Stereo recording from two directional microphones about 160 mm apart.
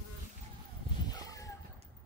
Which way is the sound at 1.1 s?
25° left (ahead or behind).